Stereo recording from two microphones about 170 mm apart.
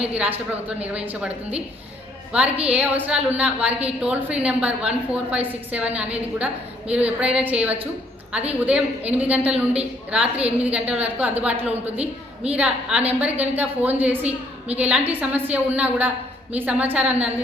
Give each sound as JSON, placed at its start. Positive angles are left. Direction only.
{"t": 0.0, "sound": "a woman's voice", "side_deg": -10}
{"t": 11.9, "sound": "a woman's voice", "side_deg": -35}
{"t": 12.5, "sound": "a woman's voice", "side_deg": -10}